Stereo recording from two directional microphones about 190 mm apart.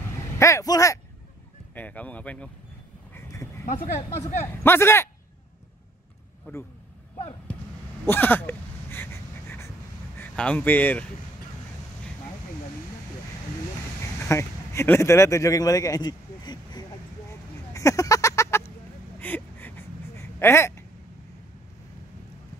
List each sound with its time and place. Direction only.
0.4 s a man's voice: 15° left (ahead or behind)
3.2 s a sound: 15° left (ahead or behind)
3.6 s speech: 40° left (ahead or behind)
4.2 s a man's voice: 15° left (ahead or behind)
6.5 s a man's voice: 10° left (ahead or behind)
8.1 s a sound: 10° left (ahead or behind)
10.1 s speech: 5° left (ahead or behind)
14.2 s speech: 15° left (ahead or behind)
17.7 s a sound: 15° left (ahead or behind)